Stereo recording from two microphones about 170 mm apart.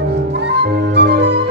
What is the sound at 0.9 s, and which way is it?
Music, 90° right.